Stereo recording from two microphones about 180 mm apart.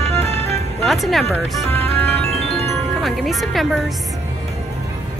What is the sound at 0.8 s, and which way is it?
Speech, centre (ahead or behind).